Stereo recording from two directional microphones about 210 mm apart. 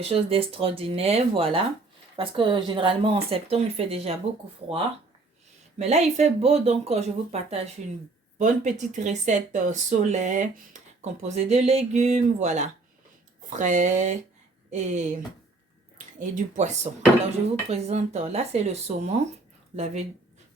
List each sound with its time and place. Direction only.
0.0 s speech: 25° right (ahead or behind)
5.8 s speech: 30° right (ahead or behind)
16.1 s speech: 40° right (ahead or behind)